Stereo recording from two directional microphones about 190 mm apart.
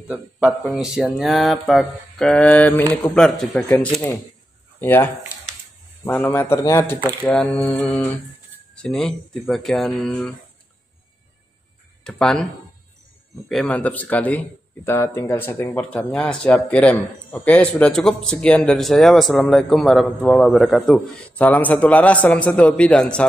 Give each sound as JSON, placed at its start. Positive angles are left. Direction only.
{"t": 0.1, "sound": "speech", "side_deg": -5}
{"t": 7.1, "sound": "speech", "side_deg": 5}
{"t": 12.0, "sound": "speech", "side_deg": 5}
{"t": 13.5, "sound": "speech", "side_deg": 5}